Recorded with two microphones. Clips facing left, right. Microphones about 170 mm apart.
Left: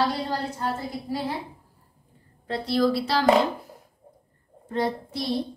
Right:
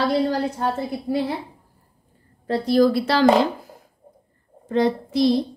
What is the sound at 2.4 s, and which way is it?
Speech, 45° right (ahead or behind).